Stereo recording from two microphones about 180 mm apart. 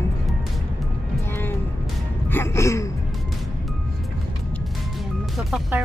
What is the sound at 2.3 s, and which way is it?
Speech, 15° left (ahead or behind).